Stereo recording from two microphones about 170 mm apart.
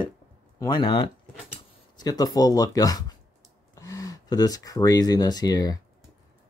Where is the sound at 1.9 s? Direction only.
20° left (ahead or behind).